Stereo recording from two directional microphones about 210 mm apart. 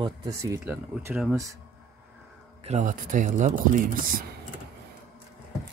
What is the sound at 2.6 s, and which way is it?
Speech, 35° right (ahead or behind).